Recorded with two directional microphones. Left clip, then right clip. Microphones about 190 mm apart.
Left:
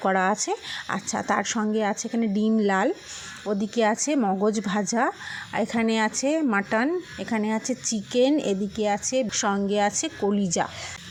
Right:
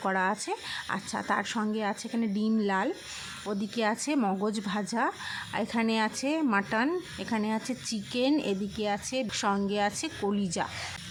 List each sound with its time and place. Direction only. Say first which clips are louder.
0.0 s a woman's voice: left 6 dB; 20° left (ahead or behind)